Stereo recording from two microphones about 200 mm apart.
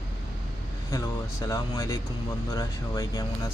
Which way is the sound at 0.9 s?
15° left (ahead or behind).